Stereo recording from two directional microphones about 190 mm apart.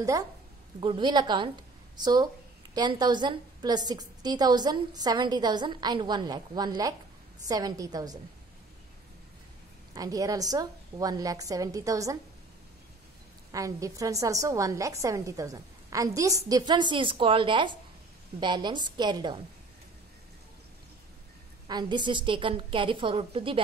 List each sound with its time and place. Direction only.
0.7 s a woman's voice: 25° right (ahead or behind)
9.9 s a woman's voice: 20° right (ahead or behind)
13.5 s a woman's voice: 15° right (ahead or behind)
21.6 s a woman's voice: 25° right (ahead or behind)